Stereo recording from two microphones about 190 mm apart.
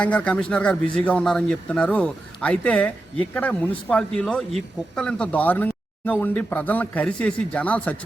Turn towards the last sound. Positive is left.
turn(degrees=5)  # may be behind; listen again after turning